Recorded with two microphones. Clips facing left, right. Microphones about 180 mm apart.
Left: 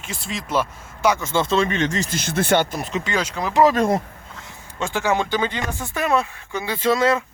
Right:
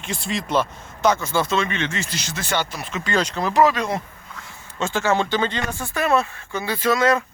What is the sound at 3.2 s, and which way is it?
Speech, 10° left (ahead or behind).